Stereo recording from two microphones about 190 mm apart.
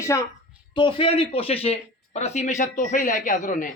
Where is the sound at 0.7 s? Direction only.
25° left (ahead or behind).